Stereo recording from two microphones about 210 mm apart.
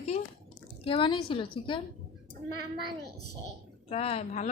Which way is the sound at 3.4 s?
30° left (ahead or behind).